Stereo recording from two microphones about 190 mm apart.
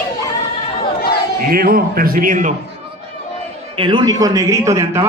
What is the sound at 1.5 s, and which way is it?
Speech, 50° right (ahead or behind).